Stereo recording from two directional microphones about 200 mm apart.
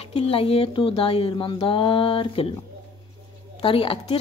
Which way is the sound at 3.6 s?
25° left (ahead or behind).